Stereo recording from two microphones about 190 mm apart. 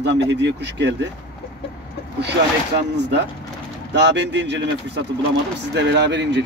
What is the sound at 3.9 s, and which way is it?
Speech, 65° right (ahead or behind).